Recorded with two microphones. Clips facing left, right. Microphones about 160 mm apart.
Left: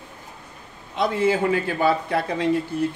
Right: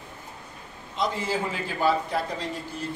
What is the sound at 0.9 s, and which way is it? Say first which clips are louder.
A man's voice: left 7 dB; 60° left (ahead or behind).